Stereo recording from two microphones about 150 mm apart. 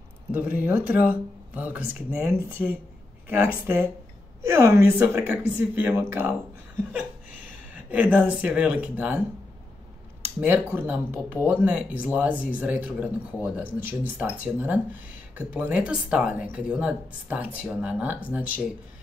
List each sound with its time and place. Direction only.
0.3 s speech: 10° right (ahead or behind)
2.2 s a woman's voice: 20° right (ahead or behind)
4.4 s a woman's voice: 20° right (ahead or behind)
7.7 s speech: 10° right (ahead or behind)
10.4 s speech: 10° right (ahead or behind)